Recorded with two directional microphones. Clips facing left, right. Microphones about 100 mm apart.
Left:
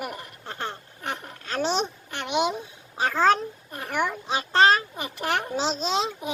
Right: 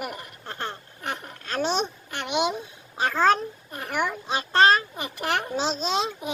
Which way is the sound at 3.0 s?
35° left (ahead or behind).